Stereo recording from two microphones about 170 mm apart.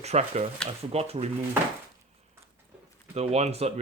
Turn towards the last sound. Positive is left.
turn(degrees=-40)  # may be behind; listen again after turning